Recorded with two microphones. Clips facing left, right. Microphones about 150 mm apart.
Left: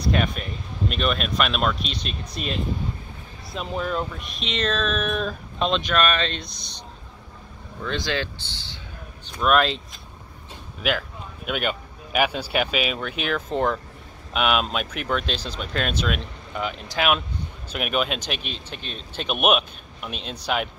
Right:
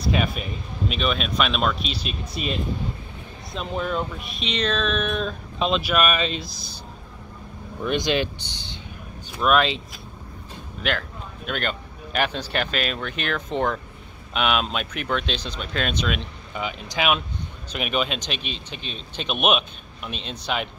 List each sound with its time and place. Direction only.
0.0 s speech: 5° right (ahead or behind)
3.5 s speech: centre (ahead or behind)
7.8 s speech: 20° right (ahead or behind)
9.3 s speech: centre (ahead or behind)
10.8 s a man's voice: 5° left (ahead or behind)